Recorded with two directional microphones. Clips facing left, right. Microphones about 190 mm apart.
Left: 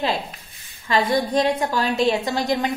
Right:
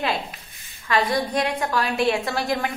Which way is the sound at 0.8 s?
25° left (ahead or behind).